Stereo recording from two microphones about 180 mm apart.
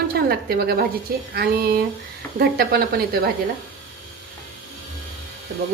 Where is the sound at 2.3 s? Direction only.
60° right (ahead or behind).